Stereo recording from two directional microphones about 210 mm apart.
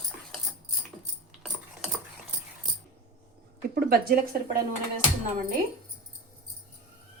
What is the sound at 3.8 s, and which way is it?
Speech, 45° right (ahead or behind).